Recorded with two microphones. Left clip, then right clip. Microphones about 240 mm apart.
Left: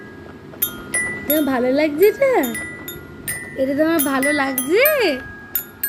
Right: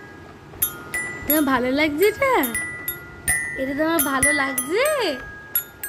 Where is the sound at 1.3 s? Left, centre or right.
Right.